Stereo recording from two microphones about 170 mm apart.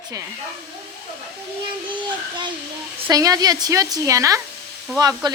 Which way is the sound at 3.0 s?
20° right (ahead or behind).